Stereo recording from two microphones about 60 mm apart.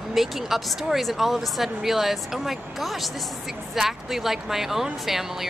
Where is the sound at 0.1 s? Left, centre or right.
Centre.